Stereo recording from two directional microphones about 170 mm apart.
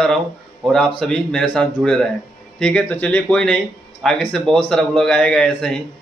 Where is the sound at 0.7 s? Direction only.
5° left (ahead or behind).